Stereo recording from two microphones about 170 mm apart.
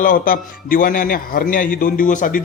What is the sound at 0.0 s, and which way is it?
A man's voice, 55° left (ahead or behind).